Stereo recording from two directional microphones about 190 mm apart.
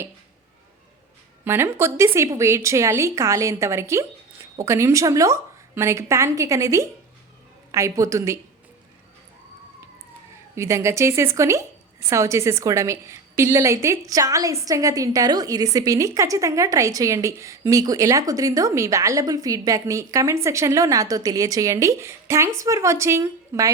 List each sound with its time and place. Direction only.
1.5 s a woman's voice: 10° right (ahead or behind)
10.5 s a woman's voice: 15° right (ahead or behind)